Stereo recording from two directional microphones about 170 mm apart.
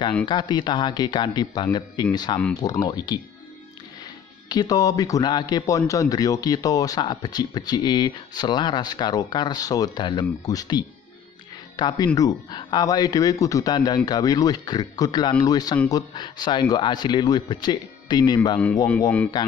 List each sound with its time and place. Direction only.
0.3 s a man's voice: 25° left (ahead or behind)
4.5 s a man's voice: 25° left (ahead or behind)
18.9 s speech: 10° left (ahead or behind)